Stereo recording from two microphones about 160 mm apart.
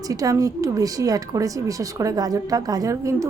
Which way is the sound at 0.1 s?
20° right (ahead or behind).